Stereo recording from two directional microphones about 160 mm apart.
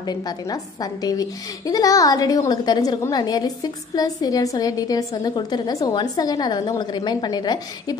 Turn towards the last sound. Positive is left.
turn(degrees=25)  # may be behind; listen again after turning